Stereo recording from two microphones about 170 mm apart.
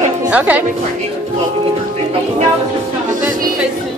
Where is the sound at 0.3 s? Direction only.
10° right (ahead or behind).